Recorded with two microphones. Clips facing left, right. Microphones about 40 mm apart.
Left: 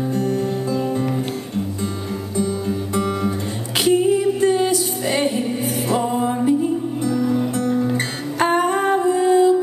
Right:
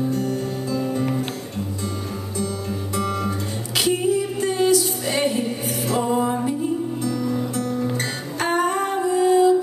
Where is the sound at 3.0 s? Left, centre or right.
Centre.